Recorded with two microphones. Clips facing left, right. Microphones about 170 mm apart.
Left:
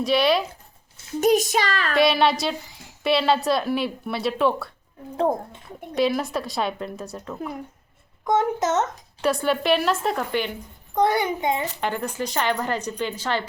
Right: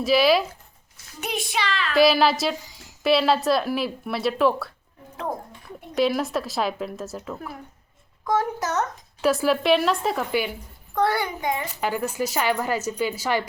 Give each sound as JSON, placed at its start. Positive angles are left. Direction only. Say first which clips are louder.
{"t": 0.0, "sound": "speech", "louder": "right 1 dB", "side_deg": 0}
{"t": 1.2, "sound": "speech", "louder": "left 9 dB", "side_deg": 40}
{"t": 2.0, "sound": "speech", "louder": "right 2 dB", "side_deg": 0}
{"t": 5.1, "sound": "speech", "louder": "left 8 dB", "side_deg": 25}
{"t": 5.9, "sound": "speech", "louder": "even", "side_deg": 0}
{"t": 7.3, "sound": "a child's voice", "louder": "left 5 dB", "side_deg": 20}
{"t": 9.2, "sound": "speech", "louder": "right 1 dB", "side_deg": 0}
{"t": 10.9, "sound": "a child's voice", "louder": "left 2 dB", "side_deg": 20}
{"t": 11.8, "sound": "speech", "louder": "right 1 dB", "side_deg": -5}